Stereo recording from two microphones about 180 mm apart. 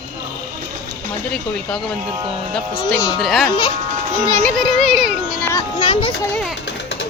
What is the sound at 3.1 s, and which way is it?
Speech, centre (ahead or behind).